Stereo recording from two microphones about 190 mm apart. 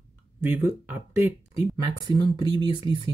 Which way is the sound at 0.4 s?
10° right (ahead or behind).